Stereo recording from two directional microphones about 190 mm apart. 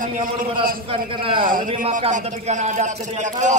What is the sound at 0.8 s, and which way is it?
Speech, 30° right (ahead or behind).